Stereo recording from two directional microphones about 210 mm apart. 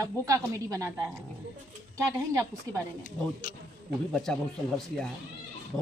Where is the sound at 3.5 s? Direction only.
40° left (ahead or behind).